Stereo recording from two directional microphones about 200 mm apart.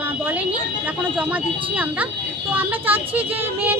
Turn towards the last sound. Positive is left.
turn(degrees=-10)  # may be behind; listen again after turning